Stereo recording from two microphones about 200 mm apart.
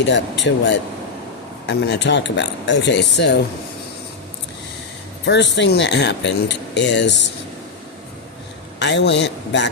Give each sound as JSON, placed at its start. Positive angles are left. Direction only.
{"t": 0.0, "sound": "speech", "side_deg": 60}
{"t": 5.2, "sound": "speech", "side_deg": 60}
{"t": 8.8, "sound": "speech", "side_deg": 60}